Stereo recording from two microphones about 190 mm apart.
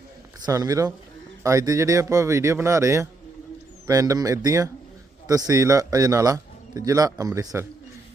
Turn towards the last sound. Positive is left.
turn(degrees=-15)  # may be behind; listen again after turning